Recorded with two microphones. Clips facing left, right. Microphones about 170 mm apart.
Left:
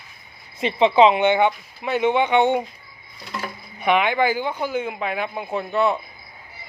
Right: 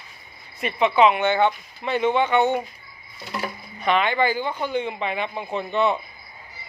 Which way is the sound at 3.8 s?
10° left (ahead or behind).